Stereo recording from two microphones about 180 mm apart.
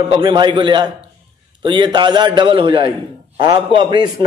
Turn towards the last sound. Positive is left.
turn(degrees=-25)  # may be behind; listen again after turning